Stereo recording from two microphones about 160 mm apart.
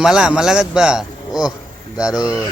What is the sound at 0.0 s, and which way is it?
A man's voice, 5° right (ahead or behind).